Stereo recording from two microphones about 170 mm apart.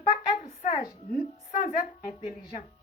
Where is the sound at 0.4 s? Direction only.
45° left (ahead or behind).